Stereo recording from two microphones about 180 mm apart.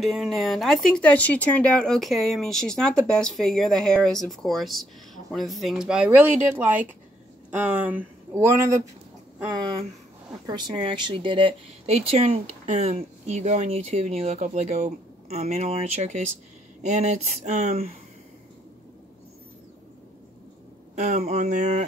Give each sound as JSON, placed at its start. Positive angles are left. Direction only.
{"t": 0.0, "sound": "speech", "side_deg": 0}
{"t": 10.4, "sound": "speech", "side_deg": -25}
{"t": 20.9, "sound": "speech", "side_deg": -40}